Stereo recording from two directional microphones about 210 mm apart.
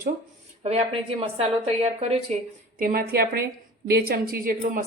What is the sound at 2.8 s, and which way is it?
A woman's voice, 45° right (ahead or behind).